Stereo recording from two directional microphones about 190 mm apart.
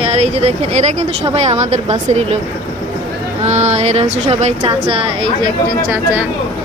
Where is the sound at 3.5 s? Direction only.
35° right (ahead or behind).